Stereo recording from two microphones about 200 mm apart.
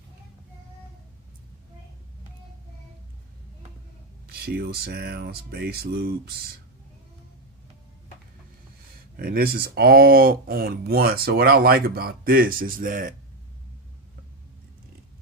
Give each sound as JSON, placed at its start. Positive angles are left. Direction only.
{"t": 4.3, "sound": "speech", "side_deg": -50}
{"t": 9.1, "sound": "speech", "side_deg": -50}